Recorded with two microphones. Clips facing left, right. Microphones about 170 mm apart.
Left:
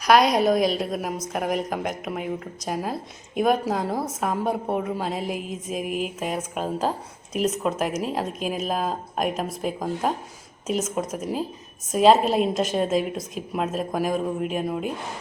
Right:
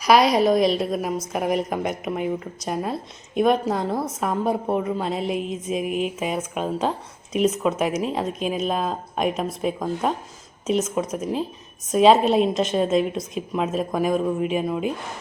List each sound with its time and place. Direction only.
0.0 s a woman's voice: 5° right (ahead or behind)